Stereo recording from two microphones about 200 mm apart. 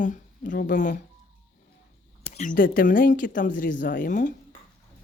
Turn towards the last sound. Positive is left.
turn(degrees=40)  # may be behind; listen again after turning